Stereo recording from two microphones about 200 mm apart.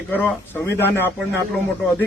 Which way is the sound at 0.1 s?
10° left (ahead or behind).